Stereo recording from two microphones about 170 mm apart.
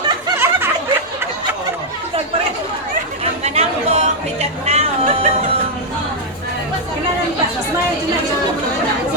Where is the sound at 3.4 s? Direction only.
40° right (ahead or behind).